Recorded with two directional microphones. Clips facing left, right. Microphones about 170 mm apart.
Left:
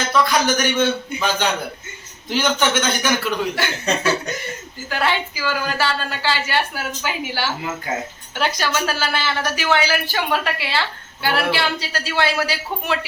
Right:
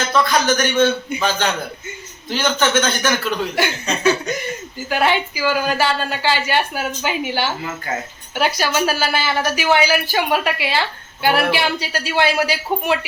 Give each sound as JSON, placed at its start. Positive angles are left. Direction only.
{"t": 0.1, "sound": "speech", "side_deg": 10}
{"t": 2.3, "sound": "speech", "side_deg": 15}
{"t": 3.5, "sound": "a woman's voice", "side_deg": -15}